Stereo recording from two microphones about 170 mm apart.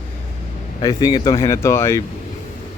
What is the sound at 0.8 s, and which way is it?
Speech, 25° left (ahead or behind).